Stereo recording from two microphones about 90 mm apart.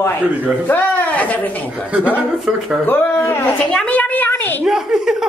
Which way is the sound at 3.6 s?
10° left (ahead or behind).